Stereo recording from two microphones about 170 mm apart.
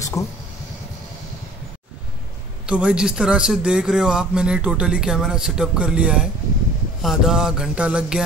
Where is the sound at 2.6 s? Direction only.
5° right (ahead or behind).